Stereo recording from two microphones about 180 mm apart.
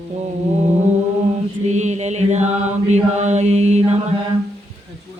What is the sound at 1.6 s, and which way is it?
Chant, 40° right (ahead or behind).